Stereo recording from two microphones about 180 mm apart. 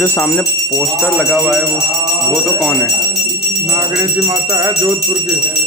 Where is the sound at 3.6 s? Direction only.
20° right (ahead or behind).